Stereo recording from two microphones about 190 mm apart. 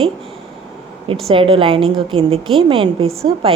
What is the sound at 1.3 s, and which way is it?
A woman's voice, 30° right (ahead or behind).